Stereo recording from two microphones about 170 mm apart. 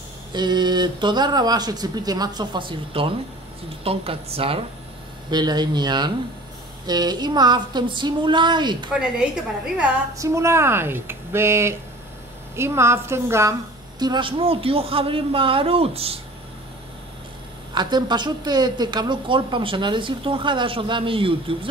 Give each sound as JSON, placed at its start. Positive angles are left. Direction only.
{"t": 0.3, "sound": "a woman's voice", "side_deg": -25}
{"t": 10.1, "sound": "a woman's voice", "side_deg": -15}
{"t": 17.7, "sound": "a woman's voice", "side_deg": -25}